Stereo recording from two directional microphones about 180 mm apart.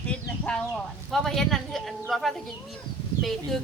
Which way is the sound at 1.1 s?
Centre (ahead or behind).